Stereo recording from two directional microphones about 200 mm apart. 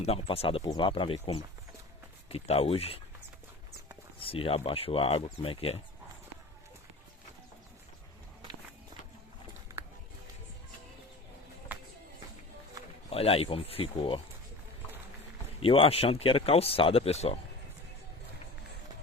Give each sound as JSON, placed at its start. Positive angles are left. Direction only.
{"t": 0.0, "sound": "speech", "side_deg": 30}
{"t": 4.2, "sound": "speech", "side_deg": 25}
{"t": 9.7, "sound": "a sound", "side_deg": -15}
{"t": 11.7, "sound": "music", "side_deg": -10}
{"t": 13.1, "sound": "speech", "side_deg": 30}
{"t": 15.6, "sound": "speech", "side_deg": 30}